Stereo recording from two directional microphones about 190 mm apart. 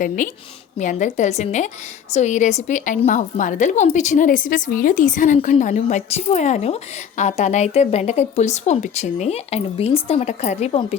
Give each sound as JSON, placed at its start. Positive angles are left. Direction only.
{"t": 0.2, "sound": "a woman's voice", "side_deg": 40}